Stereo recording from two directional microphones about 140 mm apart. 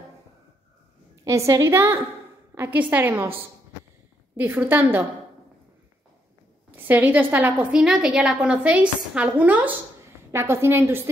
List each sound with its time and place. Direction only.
1.2 s a woman's voice: 20° right (ahead or behind)
4.4 s a woman's voice: 15° right (ahead or behind)
6.7 s a woman's voice: 15° right (ahead or behind)